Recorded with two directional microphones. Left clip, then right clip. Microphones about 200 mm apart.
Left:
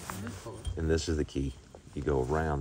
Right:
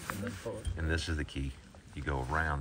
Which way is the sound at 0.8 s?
25° left (ahead or behind).